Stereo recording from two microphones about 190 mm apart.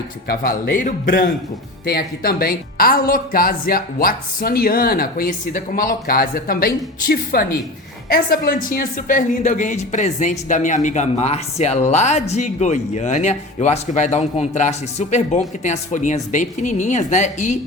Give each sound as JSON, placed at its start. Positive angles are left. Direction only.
{"t": 0.3, "sound": "speech", "side_deg": 50}